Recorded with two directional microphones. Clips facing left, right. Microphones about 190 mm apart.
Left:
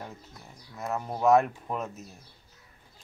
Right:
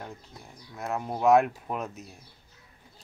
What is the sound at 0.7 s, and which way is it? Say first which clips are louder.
Speech: right 1 dB; centre (ahead or behind).